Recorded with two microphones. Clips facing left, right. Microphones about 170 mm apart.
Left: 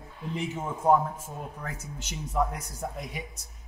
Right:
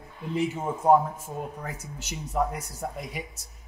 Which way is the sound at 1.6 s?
10° right (ahead or behind).